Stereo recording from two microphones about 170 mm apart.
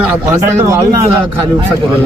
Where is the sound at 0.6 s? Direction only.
20° right (ahead or behind).